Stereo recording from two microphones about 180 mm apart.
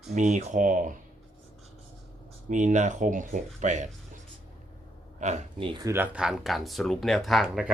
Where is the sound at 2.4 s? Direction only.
45° right (ahead or behind).